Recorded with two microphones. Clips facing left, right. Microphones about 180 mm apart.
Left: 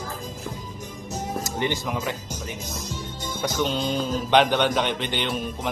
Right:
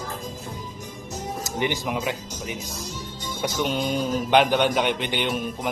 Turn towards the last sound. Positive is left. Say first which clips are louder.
# right 1 dB
turn(degrees=-5)  # may be behind; listen again after turning